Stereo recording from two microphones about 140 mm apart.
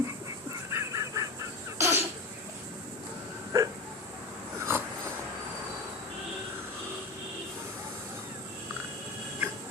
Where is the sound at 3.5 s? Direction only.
25° right (ahead or behind).